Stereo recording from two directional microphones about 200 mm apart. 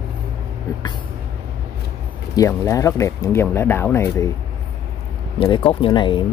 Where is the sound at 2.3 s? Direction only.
15° left (ahead or behind).